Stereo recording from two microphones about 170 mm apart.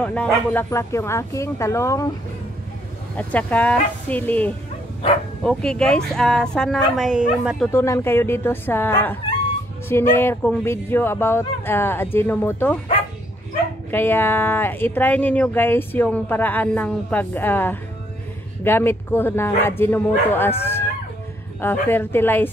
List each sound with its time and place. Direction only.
0.0 s speech: 5° left (ahead or behind)
3.2 s speech: 10° left (ahead or behind)
7.7 s speech: 15° left (ahead or behind)
13.8 s speech: 10° left (ahead or behind)